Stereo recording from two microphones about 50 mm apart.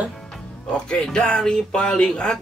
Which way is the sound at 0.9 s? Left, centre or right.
Left.